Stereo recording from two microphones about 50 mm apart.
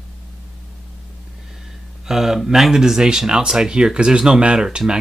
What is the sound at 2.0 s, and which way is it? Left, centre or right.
Speech, centre.